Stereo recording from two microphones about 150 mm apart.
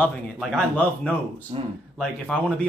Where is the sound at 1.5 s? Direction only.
40° right (ahead or behind).